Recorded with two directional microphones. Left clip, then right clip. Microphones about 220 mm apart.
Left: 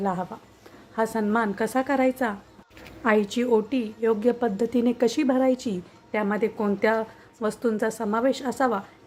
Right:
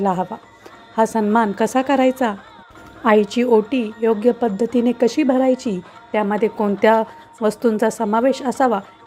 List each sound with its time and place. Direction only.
0.0 s a woman's voice: 25° right (ahead or behind)